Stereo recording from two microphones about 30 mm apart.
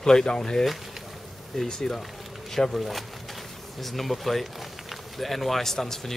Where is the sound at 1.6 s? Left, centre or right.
Centre.